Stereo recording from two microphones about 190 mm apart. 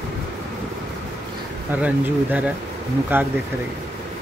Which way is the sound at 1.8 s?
5° right (ahead or behind).